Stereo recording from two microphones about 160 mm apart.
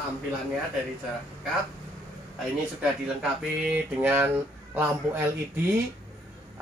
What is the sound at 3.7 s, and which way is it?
Speech, 10° right (ahead or behind).